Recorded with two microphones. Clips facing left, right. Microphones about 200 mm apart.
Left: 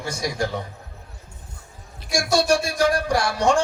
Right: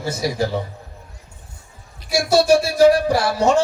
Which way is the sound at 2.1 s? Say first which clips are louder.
Right 5 dB; 5° right (ahead or behind).